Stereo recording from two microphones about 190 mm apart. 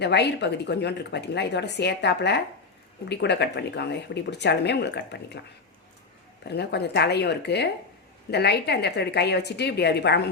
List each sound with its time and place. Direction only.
0.0 s speech: 60° left (ahead or behind)
6.5 s speech: 60° left (ahead or behind)